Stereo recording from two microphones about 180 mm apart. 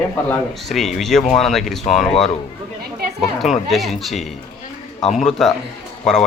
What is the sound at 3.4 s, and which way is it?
Speech, centre (ahead or behind).